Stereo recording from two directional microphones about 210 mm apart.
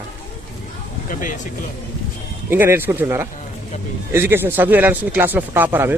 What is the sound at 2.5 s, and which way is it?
Speech, 10° right (ahead or behind).